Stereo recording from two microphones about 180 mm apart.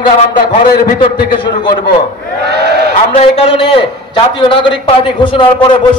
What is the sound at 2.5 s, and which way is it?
Speech, 65° right (ahead or behind).